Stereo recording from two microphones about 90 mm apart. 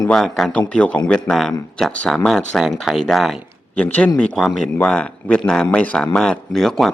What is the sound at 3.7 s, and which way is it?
Speech, 15° left (ahead or behind).